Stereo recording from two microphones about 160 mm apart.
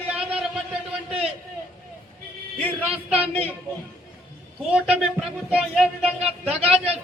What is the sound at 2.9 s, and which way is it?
Speech, 5° right (ahead or behind).